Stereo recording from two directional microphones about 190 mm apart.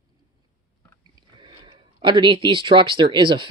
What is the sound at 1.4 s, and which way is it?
Speech, 25° right (ahead or behind).